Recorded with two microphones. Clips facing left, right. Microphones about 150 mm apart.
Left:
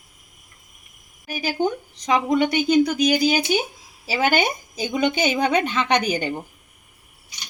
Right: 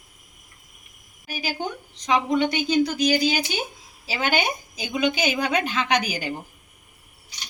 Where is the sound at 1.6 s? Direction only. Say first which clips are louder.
Left 8 dB; 45° left (ahead or behind).